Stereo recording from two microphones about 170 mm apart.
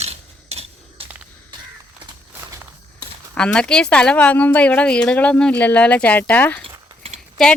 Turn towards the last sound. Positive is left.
turn(degrees=0)  # may be behind; listen again after turning